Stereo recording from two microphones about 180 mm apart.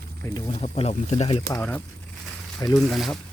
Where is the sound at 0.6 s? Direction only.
35° left (ahead or behind).